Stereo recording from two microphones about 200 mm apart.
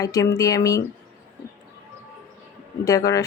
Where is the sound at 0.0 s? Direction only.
20° left (ahead or behind).